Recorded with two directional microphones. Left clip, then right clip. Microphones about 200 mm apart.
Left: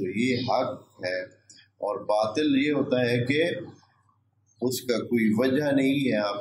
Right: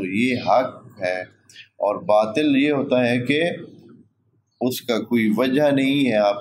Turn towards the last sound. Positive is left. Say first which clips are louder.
# right 7 dB
turn(degrees=-40)  # may be behind; listen again after turning